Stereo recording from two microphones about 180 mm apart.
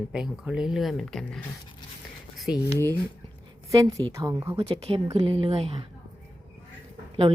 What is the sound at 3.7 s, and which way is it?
Speech, 20° right (ahead or behind).